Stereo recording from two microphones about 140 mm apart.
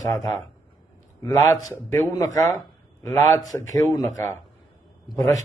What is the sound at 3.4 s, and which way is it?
A man's voice, 25° left (ahead or behind).